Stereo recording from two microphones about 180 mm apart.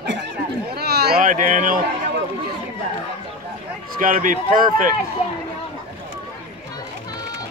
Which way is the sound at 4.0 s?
50° right (ahead or behind).